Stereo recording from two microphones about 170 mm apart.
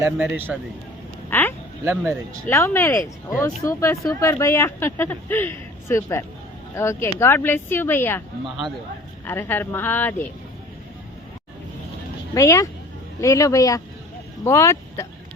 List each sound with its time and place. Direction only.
0.0 s speech: 10° right (ahead or behind)
1.3 s a sound: 10° left (ahead or behind)
1.8 s speech: 15° right (ahead or behind)
2.5 s speech: 15° left (ahead or behind)
9.2 s speech: 15° left (ahead or behind)
12.3 s speech: 20° left (ahead or behind)